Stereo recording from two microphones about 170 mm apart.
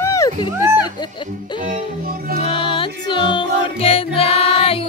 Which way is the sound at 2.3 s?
35° left (ahead or behind).